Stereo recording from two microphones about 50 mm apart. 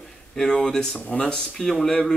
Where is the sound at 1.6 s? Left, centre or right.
Centre.